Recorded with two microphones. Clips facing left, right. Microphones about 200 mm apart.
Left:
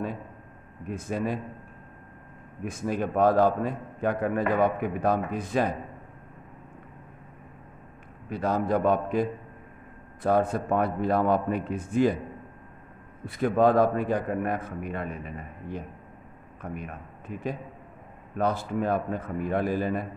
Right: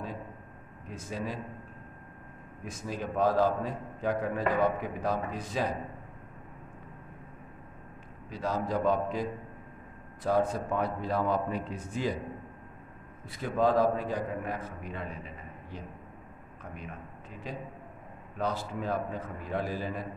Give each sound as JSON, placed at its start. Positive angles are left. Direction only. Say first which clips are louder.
{"t": 0.8, "sound": "a man's voice", "louder": "left 7 dB", "side_deg": 55}
{"t": 2.6, "sound": "a man's voice", "louder": "left 8 dB", "side_deg": 60}
{"t": 8.3, "sound": "a man's voice", "louder": "left 6 dB", "side_deg": 55}
{"t": 13.2, "sound": "a man's voice", "louder": "left 6 dB", "side_deg": 55}